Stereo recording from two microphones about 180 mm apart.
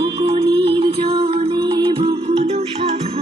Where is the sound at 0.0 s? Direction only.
30° right (ahead or behind).